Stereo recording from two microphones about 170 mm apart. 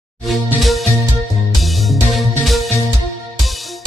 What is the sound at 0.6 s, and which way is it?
Music, centre (ahead or behind).